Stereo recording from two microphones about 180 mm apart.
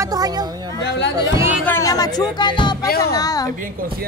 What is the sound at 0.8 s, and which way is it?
Chatter, 75° left (ahead or behind).